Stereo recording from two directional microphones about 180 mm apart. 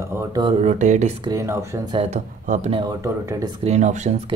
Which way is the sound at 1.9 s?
40° right (ahead or behind).